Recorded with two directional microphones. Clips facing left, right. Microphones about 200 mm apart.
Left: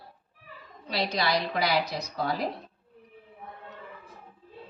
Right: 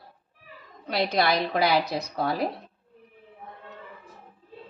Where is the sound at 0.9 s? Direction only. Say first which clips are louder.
Right 4 dB; 55° right (ahead or behind).